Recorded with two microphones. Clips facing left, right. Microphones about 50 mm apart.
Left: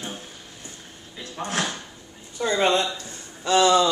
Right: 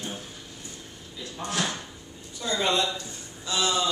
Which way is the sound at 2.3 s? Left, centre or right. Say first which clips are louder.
Left 5 dB; left.